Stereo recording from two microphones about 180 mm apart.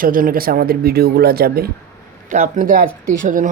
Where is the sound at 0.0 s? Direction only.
50° right (ahead or behind).